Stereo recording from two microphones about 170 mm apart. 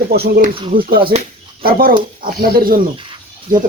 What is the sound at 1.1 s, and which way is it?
Speech, 40° right (ahead or behind).